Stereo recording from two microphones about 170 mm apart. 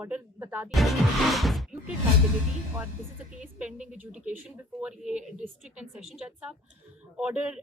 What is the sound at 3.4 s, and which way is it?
Speech, 5° right (ahead or behind).